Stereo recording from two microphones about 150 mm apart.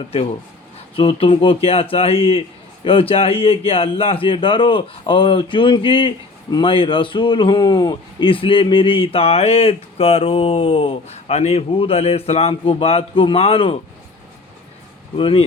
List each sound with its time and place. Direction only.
0.9 s speech: 40° left (ahead or behind)
15.2 s speech: 35° left (ahead or behind)